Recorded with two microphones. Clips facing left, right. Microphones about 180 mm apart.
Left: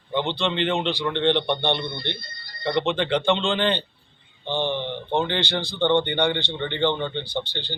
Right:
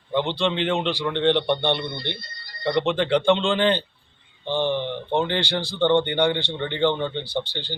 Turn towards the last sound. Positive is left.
turn(degrees=-10)  # may be behind; listen again after turning